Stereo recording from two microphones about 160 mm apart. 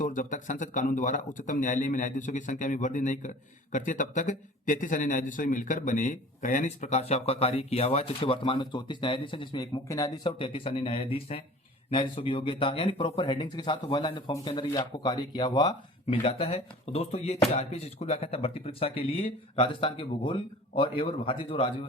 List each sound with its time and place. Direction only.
0.0 s a man's voice: 50° left (ahead or behind); by 10.1 s 20° left (ahead or behind)
10.2 s speech: 35° left (ahead or behind)
16.0 s speech: 40° left (ahead or behind)